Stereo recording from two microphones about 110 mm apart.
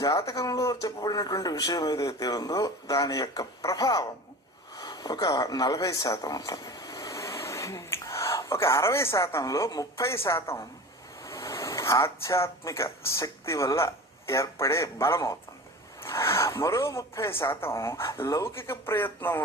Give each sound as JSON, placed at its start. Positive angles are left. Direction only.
{"t": 0.0, "sound": "speech", "side_deg": 35}